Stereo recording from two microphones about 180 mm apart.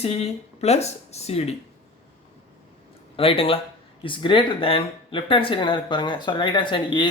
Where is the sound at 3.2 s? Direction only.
30° left (ahead or behind).